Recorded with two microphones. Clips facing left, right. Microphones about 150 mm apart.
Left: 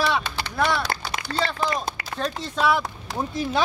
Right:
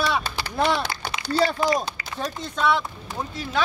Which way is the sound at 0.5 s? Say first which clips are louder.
Right 1 dB; 20° right (ahead or behind).